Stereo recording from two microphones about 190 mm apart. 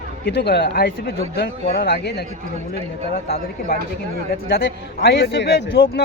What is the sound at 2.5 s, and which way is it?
Speech, 40° right (ahead or behind).